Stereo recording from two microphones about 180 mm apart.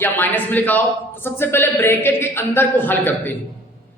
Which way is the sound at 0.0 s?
10° left (ahead or behind).